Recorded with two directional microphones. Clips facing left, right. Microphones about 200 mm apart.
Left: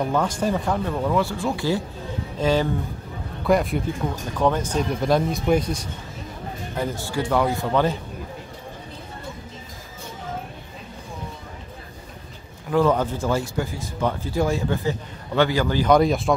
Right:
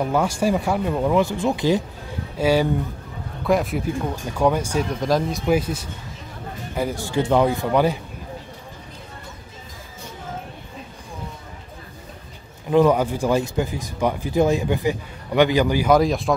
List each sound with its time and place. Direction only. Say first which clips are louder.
0.0 s speech: right 2 dB; 10° right (ahead or behind)
4.4 s speech: right 1 dB; 10° right (ahead or behind)
5.0 s speech: left 1 dB; centre (ahead or behind)
6.8 s speech: right 3 dB; 10° right (ahead or behind)
12.6 s speech: right 3 dB; 15° right (ahead or behind)
16.0 s speech: even; centre (ahead or behind)